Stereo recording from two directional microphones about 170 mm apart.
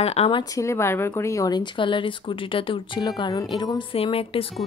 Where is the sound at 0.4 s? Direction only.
20° left (ahead or behind).